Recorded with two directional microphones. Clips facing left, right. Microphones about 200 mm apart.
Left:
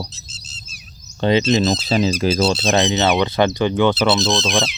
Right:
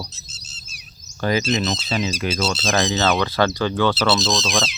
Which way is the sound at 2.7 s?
20° left (ahead or behind).